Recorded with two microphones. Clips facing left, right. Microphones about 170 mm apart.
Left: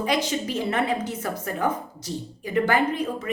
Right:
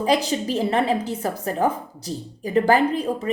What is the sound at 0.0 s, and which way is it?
A woman's voice, 35° right (ahead or behind).